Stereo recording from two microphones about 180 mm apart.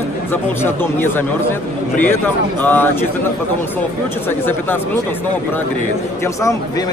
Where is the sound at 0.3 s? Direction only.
10° left (ahead or behind).